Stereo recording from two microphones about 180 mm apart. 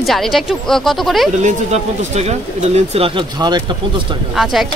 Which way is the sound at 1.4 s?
35° right (ahead or behind).